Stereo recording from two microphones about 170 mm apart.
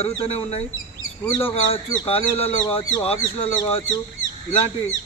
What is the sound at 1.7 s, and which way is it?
A man's voice, 35° left (ahead or behind).